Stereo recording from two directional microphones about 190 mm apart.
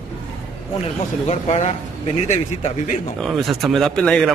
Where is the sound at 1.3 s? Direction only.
35° left (ahead or behind).